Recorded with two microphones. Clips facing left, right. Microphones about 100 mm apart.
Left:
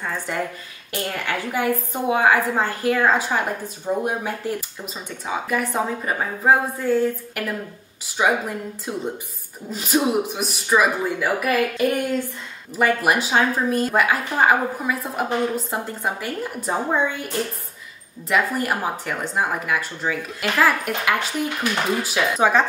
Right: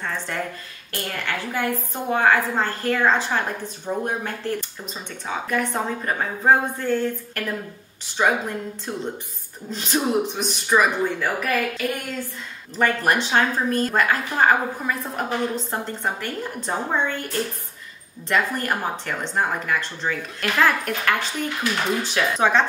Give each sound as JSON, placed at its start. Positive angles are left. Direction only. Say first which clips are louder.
{"t": 0.0, "sound": "a woman's voice", "louder": "left 2 dB", "side_deg": 10}
{"t": 11.7, "sound": "speech", "louder": "left 6 dB", "side_deg": 20}
{"t": 12.7, "sound": "speech", "louder": "left 1 dB", "side_deg": 10}